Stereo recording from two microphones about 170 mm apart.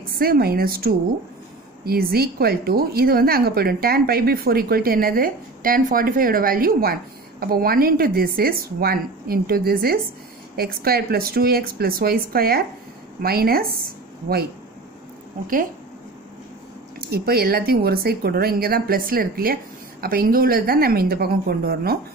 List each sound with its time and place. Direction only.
0.1 s a woman's voice: 65° right (ahead or behind)
17.1 s a woman's voice: 65° right (ahead or behind)